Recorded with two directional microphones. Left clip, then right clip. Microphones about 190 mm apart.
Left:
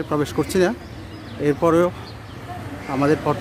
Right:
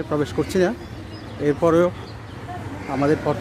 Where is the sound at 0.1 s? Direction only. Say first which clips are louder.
Left 1 dB; 15° left (ahead or behind).